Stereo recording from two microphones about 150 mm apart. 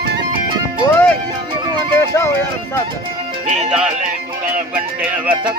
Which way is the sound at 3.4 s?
55° right (ahead or behind).